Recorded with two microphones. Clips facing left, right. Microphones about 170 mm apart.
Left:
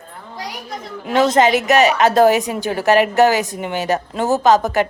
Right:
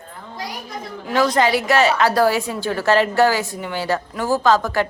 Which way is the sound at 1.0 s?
25° left (ahead or behind).